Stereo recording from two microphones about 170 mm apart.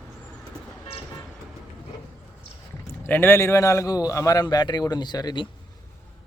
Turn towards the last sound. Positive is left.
turn(degrees=25)  # may be behind; listen again after turning